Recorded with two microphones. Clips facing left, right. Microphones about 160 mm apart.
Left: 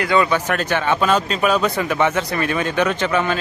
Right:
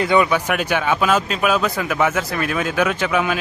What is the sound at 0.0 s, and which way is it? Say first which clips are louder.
Speech: right 1 dB; 20° right (ahead or behind).